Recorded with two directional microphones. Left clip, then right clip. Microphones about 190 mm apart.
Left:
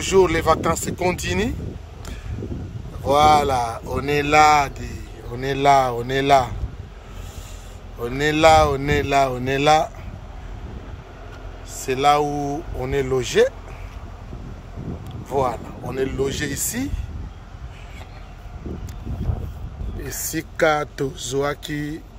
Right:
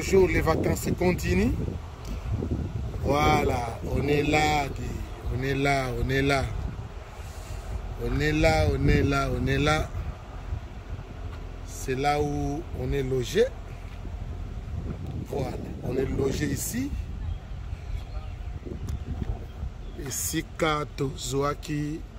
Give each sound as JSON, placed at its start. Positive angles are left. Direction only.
{"t": 0.0, "sound": "speech", "side_deg": 5}
{"t": 3.1, "sound": "speech", "side_deg": 0}
{"t": 8.2, "sound": "speech", "side_deg": 0}
{"t": 11.7, "sound": "speech", "side_deg": 0}
{"t": 12.3, "sound": "speech", "side_deg": 25}
{"t": 12.9, "sound": "speech", "side_deg": 5}
{"t": 16.0, "sound": "speech", "side_deg": 5}
{"t": 20.2, "sound": "speech", "side_deg": 0}